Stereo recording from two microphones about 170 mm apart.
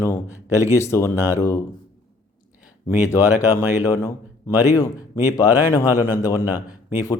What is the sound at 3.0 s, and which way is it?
Speech, 20° left (ahead or behind).